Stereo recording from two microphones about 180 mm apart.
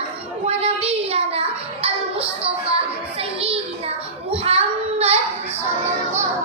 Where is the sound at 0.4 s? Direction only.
35° right (ahead or behind).